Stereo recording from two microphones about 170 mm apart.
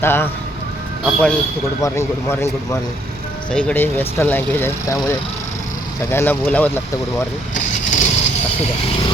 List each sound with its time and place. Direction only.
0.0 s speech: 15° left (ahead or behind)
3.5 s speech: 5° left (ahead or behind)
7.5 s vehicle: 45° left (ahead or behind)